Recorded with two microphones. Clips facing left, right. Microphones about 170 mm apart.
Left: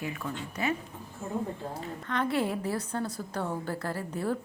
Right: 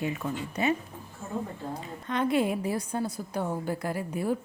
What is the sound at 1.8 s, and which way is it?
A woman's voice, 15° right (ahead or behind).